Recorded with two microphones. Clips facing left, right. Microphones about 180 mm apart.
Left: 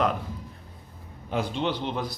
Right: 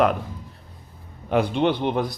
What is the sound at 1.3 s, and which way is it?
Speech, 65° right (ahead or behind).